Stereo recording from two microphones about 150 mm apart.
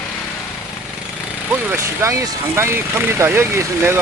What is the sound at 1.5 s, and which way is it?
Speech, 15° right (ahead or behind).